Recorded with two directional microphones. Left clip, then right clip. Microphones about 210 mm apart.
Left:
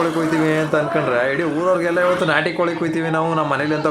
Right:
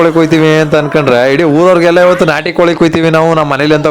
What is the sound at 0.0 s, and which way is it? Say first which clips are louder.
Speech: right 11 dB; 40° right (ahead or behind).